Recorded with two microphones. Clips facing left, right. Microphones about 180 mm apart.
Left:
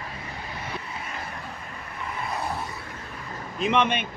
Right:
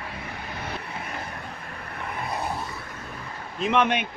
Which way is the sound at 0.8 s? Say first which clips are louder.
Right 1 dB; 55° right (ahead or behind).